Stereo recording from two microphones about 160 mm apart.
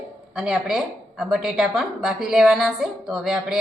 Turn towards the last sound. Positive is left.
turn(degrees=-5)  # may be behind; listen again after turning